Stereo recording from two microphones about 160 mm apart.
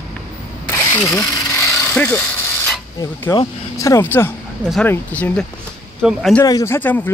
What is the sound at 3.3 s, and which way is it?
Speech, 20° left (ahead or behind).